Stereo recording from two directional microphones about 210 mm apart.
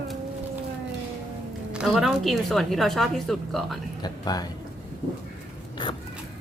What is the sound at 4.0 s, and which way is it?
Speech, 20° left (ahead or behind).